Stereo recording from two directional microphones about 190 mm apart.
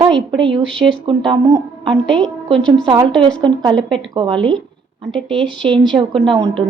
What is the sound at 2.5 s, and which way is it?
A woman's voice, 25° right (ahead or behind).